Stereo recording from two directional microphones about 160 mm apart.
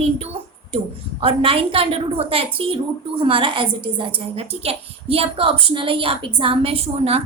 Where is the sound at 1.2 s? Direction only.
35° right (ahead or behind).